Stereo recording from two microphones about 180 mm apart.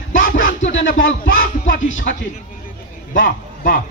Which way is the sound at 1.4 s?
50° left (ahead or behind).